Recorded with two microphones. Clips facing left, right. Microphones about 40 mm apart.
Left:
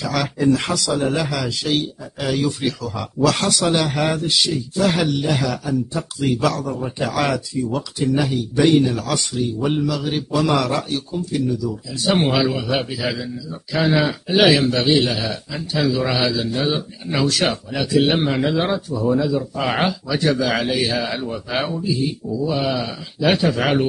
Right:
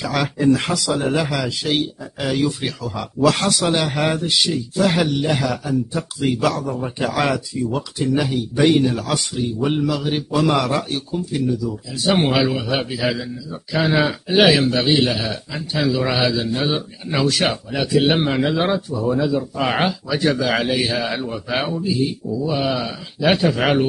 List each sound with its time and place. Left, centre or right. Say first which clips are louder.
0.0 s a man's voice: right 1 dB; centre
15.6 s a man's voice: even; right
15.9 s a man's voice: right 2 dB; centre